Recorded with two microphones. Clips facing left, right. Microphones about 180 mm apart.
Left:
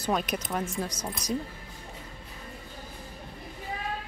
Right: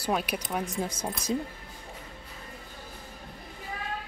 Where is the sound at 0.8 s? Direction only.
25° right (ahead or behind).